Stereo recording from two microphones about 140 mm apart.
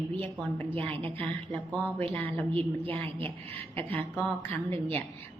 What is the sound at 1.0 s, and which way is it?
Speech, 40° right (ahead or behind).